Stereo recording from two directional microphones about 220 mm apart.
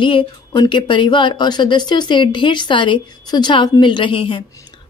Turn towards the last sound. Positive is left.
turn(degrees=25)  # may be behind; listen again after turning